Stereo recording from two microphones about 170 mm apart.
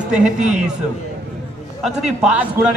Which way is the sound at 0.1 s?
5° right (ahead or behind).